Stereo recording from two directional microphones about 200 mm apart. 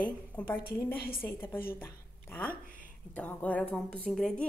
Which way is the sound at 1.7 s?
10° left (ahead or behind).